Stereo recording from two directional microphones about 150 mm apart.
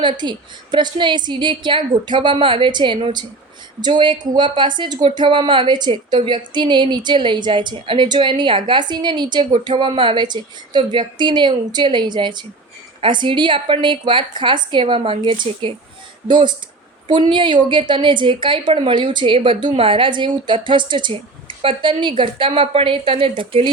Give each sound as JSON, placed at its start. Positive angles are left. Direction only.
{"t": 0.0, "sound": "speech", "side_deg": -30}